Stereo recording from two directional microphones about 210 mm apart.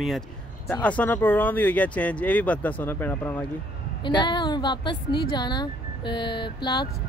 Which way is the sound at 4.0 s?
20° left (ahead or behind).